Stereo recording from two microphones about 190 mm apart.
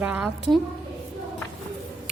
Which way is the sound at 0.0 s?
5° right (ahead or behind).